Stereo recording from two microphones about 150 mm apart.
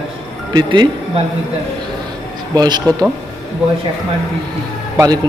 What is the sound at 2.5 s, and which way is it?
Speech, 25° right (ahead or behind).